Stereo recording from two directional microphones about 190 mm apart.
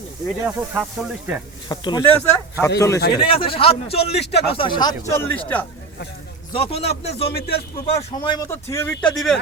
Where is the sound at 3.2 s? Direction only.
30° left (ahead or behind).